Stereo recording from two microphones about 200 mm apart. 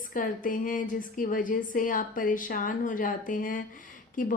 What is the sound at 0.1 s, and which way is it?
A woman's voice, 45° left (ahead or behind).